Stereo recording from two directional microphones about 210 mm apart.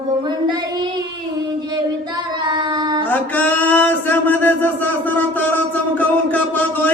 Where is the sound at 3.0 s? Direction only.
10° left (ahead or behind).